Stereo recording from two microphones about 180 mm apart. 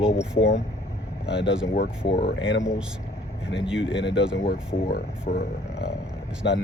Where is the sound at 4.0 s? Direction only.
75° left (ahead or behind).